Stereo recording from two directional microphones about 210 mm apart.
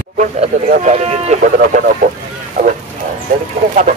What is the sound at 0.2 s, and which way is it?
Speech, 40° right (ahead or behind).